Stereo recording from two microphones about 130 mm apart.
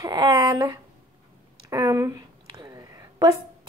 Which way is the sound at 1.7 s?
25° right (ahead or behind).